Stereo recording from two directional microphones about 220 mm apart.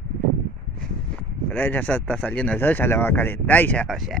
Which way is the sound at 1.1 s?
5° left (ahead or behind).